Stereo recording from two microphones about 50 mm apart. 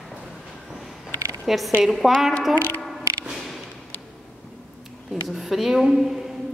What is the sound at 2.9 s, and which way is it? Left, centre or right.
Music, centre.